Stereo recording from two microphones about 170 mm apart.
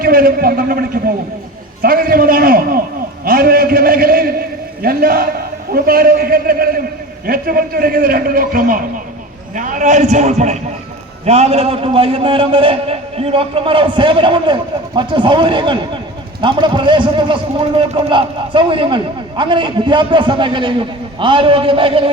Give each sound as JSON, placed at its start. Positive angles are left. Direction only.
{"t": 0.0, "sound": "a man's voice", "side_deg": -60}
{"t": 3.2, "sound": "a sound", "side_deg": -60}
{"t": 5.7, "sound": "a man's voice", "side_deg": -60}